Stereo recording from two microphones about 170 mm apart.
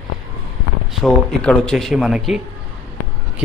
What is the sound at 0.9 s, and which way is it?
A man's voice, centre (ahead or behind).